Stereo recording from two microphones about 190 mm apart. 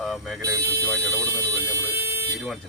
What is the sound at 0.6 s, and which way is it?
Speech, 60° right (ahead or behind).